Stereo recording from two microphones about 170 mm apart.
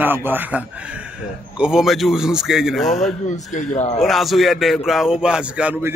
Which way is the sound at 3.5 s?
45° left (ahead or behind).